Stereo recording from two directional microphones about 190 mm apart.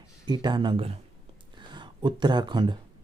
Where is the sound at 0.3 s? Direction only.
25° right (ahead or behind).